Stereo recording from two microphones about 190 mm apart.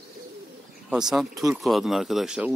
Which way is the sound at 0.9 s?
Centre (ahead or behind).